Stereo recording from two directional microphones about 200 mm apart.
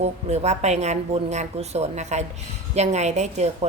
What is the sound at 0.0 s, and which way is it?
A woman's voice, 35° right (ahead or behind).